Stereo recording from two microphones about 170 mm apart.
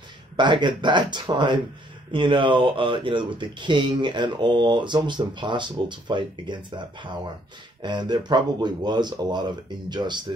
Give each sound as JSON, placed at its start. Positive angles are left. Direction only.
{"t": 0.4, "sound": "speech", "side_deg": -25}